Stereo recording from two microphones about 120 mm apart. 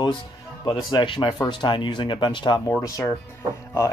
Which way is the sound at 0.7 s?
40° left (ahead or behind).